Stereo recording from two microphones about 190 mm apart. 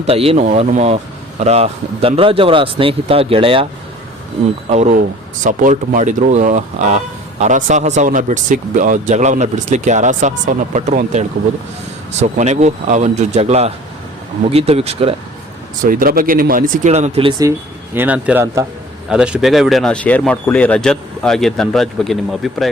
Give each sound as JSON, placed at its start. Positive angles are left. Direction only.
{"t": 0.1, "sound": "speech", "side_deg": -30}
{"t": 4.7, "sound": "speech", "side_deg": -40}
{"t": 15.8, "sound": "speech", "side_deg": -50}
{"t": 17.9, "sound": "a man's voice", "side_deg": -10}